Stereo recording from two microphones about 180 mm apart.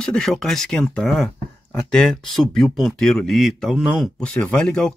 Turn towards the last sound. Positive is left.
turn(degrees=5)  # may be behind; listen again after turning